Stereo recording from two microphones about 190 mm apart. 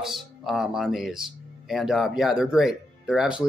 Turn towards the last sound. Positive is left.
turn(degrees=-5)  # may be behind; listen again after turning